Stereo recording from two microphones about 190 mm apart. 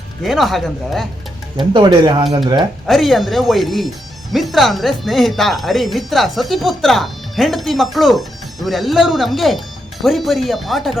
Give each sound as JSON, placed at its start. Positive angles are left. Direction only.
{"t": 0.2, "sound": "speech", "side_deg": 0}
{"t": 1.5, "sound": "speech", "side_deg": -25}
{"t": 2.8, "sound": "speech", "side_deg": 0}